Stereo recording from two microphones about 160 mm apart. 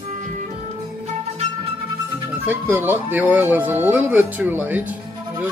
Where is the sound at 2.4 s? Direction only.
10° right (ahead or behind).